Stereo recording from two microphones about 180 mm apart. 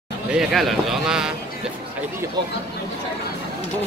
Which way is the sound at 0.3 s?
Centre (ahead or behind).